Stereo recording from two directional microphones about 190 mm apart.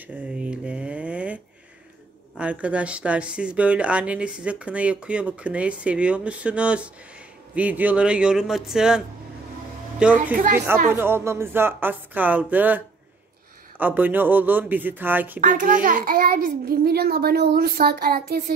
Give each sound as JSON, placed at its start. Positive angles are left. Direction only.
{"t": 0.0, "sound": "a sound", "side_deg": -5}
{"t": 2.3, "sound": "a man's voice", "side_deg": -5}
{"t": 15.4, "sound": "a child's voice", "side_deg": -45}